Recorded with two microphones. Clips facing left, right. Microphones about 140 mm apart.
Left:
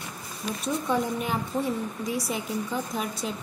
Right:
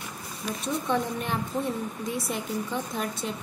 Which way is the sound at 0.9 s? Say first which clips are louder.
Left 1 dB; 5° left (ahead or behind).